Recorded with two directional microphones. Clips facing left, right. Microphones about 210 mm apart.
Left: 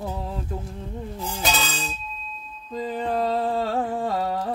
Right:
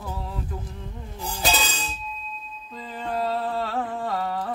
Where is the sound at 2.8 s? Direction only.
45° left (ahead or behind).